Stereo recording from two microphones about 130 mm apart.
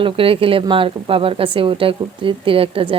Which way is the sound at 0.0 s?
45° right (ahead or behind).